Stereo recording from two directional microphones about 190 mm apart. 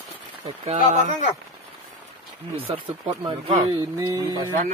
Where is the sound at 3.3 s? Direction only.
30° right (ahead or behind).